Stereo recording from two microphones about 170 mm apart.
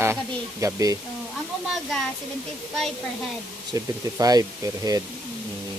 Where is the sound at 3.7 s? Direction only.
20° right (ahead or behind).